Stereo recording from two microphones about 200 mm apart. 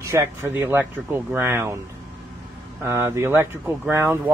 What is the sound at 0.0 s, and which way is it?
Speech, 15° right (ahead or behind).